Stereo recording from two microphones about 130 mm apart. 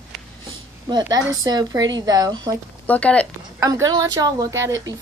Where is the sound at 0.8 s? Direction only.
30° right (ahead or behind).